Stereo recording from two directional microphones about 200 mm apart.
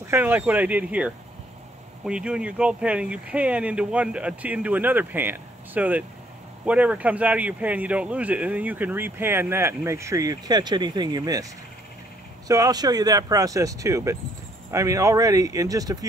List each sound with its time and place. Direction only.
0.0 s speech: 10° right (ahead or behind)
12.4 s speech: 15° right (ahead or behind)